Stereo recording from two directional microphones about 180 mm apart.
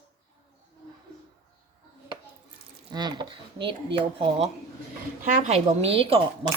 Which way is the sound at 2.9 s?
25° right (ahead or behind).